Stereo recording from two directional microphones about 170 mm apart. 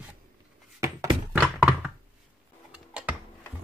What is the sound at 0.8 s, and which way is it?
Thunk, 20° right (ahead or behind).